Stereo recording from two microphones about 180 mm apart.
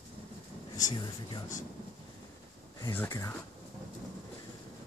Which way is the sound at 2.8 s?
15° left (ahead or behind).